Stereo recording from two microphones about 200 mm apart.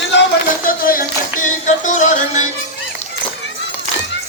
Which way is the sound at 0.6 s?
45° left (ahead or behind).